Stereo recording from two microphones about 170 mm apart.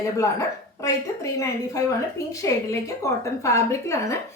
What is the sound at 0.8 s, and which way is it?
A woman's voice, 20° left (ahead or behind).